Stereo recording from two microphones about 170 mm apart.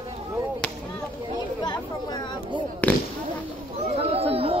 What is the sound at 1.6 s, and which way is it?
Chatter, 25° left (ahead or behind).